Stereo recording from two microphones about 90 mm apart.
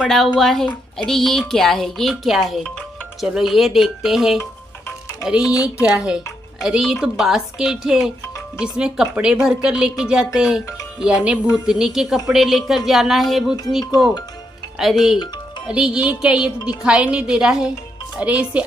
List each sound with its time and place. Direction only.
0.4 s a woman's voice: 5° left (ahead or behind); by 18.6 s 15° right (ahead or behind)